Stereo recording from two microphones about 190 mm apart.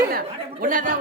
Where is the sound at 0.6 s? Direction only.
45° right (ahead or behind).